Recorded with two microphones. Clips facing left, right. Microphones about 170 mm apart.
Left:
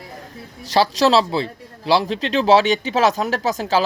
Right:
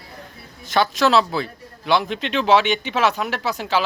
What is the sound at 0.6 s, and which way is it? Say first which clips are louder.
A man's voice: left 2 dB; 35° left (ahead or behind).